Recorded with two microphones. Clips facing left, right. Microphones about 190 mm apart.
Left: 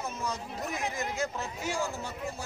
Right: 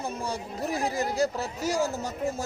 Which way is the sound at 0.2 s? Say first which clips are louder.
Right 3 dB; 30° right (ahead or behind).